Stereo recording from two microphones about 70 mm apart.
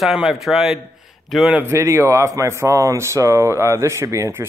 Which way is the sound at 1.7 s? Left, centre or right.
Right.